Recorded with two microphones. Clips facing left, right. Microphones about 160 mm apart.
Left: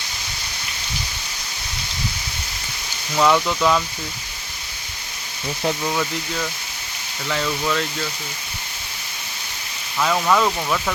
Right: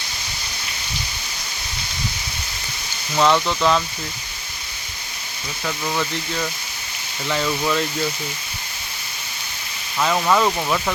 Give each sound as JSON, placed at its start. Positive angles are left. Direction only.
{"t": 3.2, "sound": "speech", "side_deg": 0}
{"t": 5.9, "sound": "speech", "side_deg": 0}
{"t": 10.0, "sound": "speech", "side_deg": -5}